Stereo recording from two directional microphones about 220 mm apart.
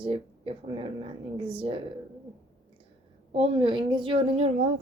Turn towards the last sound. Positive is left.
turn(degrees=-30)  # may be behind; listen again after turning